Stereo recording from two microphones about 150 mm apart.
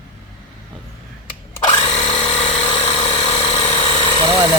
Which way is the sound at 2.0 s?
45° left (ahead or behind).